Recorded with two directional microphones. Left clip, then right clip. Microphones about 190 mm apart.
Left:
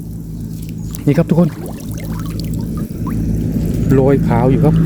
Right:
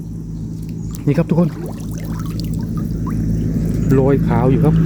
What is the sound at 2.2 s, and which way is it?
Pour, 10° left (ahead or behind).